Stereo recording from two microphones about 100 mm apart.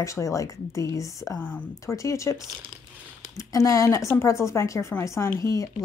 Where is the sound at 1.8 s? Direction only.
30° left (ahead or behind).